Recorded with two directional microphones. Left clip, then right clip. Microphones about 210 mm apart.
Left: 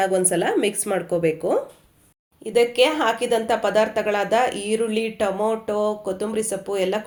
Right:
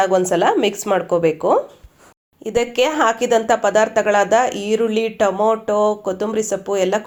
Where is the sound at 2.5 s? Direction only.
30° right (ahead or behind).